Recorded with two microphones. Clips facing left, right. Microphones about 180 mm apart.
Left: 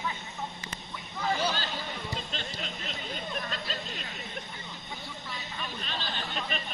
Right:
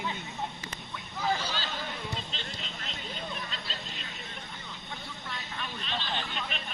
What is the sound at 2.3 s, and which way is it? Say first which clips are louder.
Music: left 3 dB; 50° left (ahead or behind).